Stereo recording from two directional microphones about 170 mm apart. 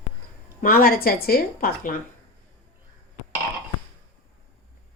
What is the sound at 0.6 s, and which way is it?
Speech, 55° left (ahead or behind).